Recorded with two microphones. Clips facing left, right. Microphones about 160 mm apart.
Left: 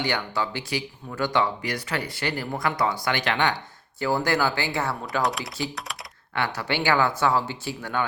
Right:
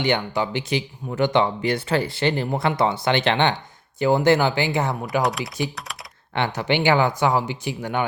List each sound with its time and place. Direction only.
0.0 s speech: 20° right (ahead or behind)
5.2 s speech: centre (ahead or behind)
6.3 s speech: 20° right (ahead or behind)